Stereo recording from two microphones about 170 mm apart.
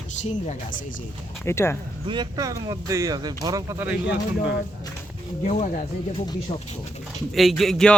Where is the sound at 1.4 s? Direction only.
15° left (ahead or behind).